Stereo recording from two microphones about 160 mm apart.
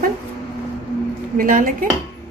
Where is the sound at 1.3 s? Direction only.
60° right (ahead or behind).